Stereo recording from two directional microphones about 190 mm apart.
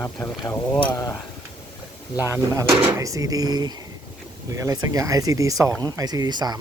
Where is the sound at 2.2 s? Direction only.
15° right (ahead or behind).